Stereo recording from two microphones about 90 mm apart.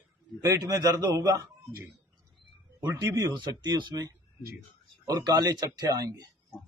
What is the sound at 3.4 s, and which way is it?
Speech, 55° right (ahead or behind).